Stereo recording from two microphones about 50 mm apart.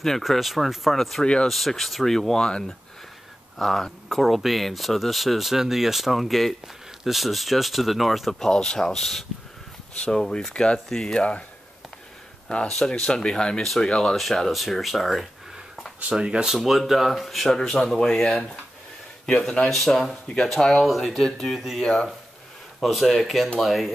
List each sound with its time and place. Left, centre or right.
0.2 s speech: centre
1.2 s speech: centre
1.5 s speech: centre; by 10.8 s left
10.9 s speech: centre
11.1 s speech: left
12.4 s speech: centre
13.6 s speech: centre
16.0 s speech: right
16.6 s speech: centre
19.7 s speech: centre
20.8 s speech: centre
21.8 s speech: centre